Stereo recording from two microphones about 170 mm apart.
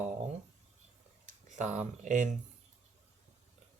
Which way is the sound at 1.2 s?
45° right (ahead or behind).